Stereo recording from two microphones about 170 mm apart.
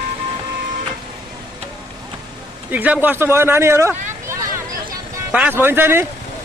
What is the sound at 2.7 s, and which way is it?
Speech, 10° right (ahead or behind).